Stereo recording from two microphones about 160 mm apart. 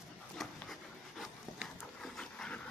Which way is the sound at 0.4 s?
Centre (ahead or behind).